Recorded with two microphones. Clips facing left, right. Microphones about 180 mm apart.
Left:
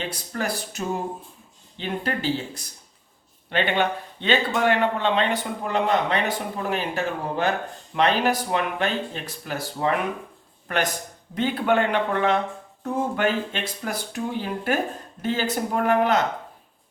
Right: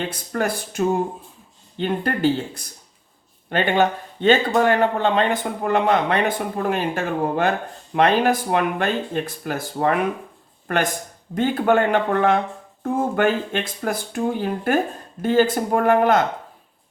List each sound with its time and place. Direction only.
0.3 s speech: 55° right (ahead or behind)
11.3 s speech: 45° right (ahead or behind)